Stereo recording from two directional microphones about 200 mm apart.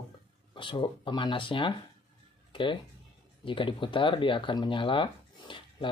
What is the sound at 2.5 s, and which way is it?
Music, 25° left (ahead or behind).